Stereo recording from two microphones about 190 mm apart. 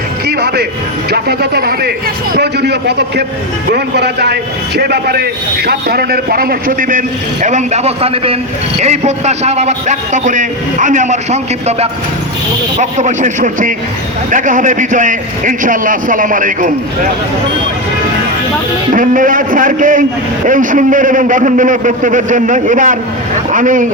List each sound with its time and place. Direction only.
0.3 s a sound: 60° right (ahead or behind)
1.1 s a man's voice: 55° right (ahead or behind)
18.9 s a man's voice: 45° right (ahead or behind)